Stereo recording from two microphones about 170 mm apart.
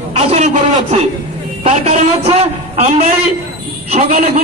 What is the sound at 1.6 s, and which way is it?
A man's voice, 40° right (ahead or behind).